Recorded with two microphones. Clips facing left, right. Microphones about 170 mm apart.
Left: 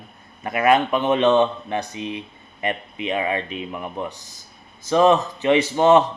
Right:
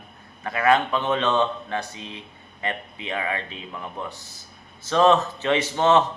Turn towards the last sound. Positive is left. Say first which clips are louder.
# left 4 dB
turn(degrees=15)  # may be behind; listen again after turning